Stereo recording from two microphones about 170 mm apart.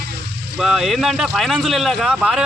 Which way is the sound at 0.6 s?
Centre (ahead or behind).